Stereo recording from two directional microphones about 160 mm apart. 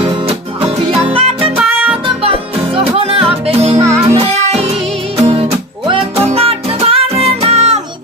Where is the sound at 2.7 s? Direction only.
35° right (ahead or behind).